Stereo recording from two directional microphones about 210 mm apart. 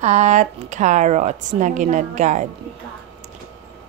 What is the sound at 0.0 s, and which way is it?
Speech, 35° right (ahead or behind).